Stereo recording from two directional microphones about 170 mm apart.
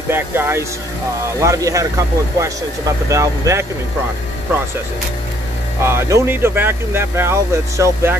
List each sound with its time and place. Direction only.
0.1 s speech: 15° right (ahead or behind)
5.8 s speech: 15° right (ahead or behind)